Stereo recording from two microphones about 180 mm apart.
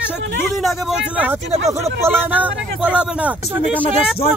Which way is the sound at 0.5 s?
Centre (ahead or behind).